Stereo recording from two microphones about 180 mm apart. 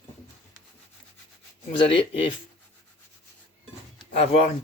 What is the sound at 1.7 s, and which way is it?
Speech, 30° left (ahead or behind).